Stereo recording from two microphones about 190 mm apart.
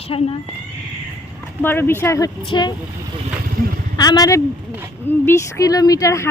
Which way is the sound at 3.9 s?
20° left (ahead or behind).